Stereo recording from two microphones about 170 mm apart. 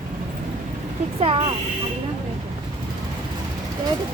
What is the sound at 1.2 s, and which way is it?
Speech, 35° right (ahead or behind).